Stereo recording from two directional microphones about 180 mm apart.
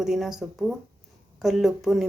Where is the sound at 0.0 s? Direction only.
5° right (ahead or behind).